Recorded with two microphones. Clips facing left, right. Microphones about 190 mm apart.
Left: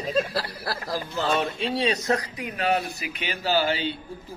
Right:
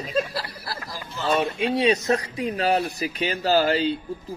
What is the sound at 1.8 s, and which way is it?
Speech, 25° right (ahead or behind).